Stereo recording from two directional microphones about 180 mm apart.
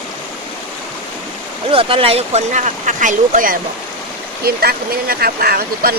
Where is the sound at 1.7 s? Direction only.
30° right (ahead or behind); by 6.0 s 60° right (ahead or behind).